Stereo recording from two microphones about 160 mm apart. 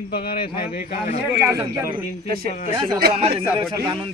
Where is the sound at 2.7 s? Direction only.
35° right (ahead or behind).